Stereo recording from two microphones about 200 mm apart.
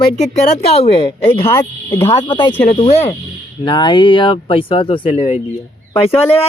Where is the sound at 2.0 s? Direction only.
25° left (ahead or behind).